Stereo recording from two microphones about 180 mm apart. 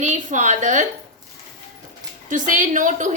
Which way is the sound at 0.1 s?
40° right (ahead or behind).